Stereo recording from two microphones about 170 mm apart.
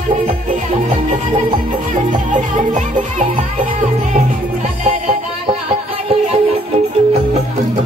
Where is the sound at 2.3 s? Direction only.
45° right (ahead or behind).